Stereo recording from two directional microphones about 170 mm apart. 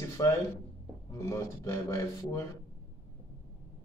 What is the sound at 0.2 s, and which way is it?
Speech, 25° left (ahead or behind).